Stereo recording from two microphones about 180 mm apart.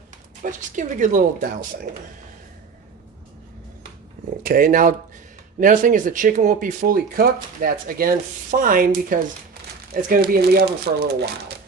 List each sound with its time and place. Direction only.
0.4 s speech: 45° right (ahead or behind)
4.4 s speech: 50° right (ahead or behind)